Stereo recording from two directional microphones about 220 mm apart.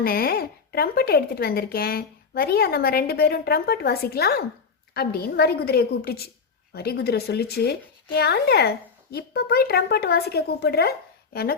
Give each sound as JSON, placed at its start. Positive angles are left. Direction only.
{"t": 0.0, "sound": "speech", "side_deg": 45}